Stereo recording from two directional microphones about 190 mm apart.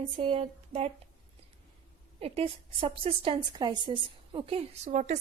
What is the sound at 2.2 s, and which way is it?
A woman's voice, 30° right (ahead or behind).